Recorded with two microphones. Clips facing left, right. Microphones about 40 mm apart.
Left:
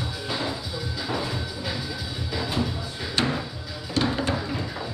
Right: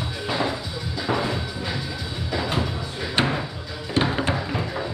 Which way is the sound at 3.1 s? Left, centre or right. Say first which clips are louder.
Right 3 dB; right.